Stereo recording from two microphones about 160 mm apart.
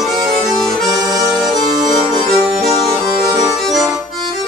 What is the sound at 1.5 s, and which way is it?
Music, 55° right (ahead or behind).